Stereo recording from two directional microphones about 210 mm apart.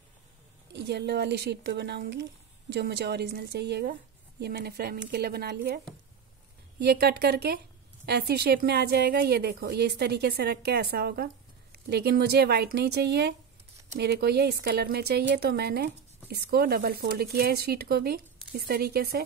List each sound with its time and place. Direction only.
0.7 s a woman's voice: 55° right (ahead or behind)
6.8 s a woman's voice: 50° right (ahead or behind)